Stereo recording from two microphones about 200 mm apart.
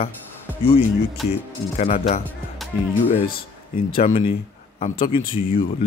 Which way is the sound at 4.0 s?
30° left (ahead or behind).